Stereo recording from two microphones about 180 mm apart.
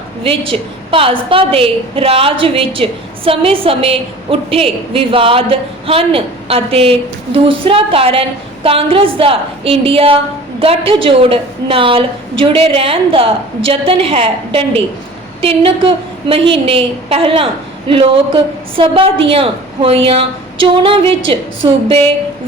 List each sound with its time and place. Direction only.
0.2 s a woman's voice: 30° right (ahead or behind)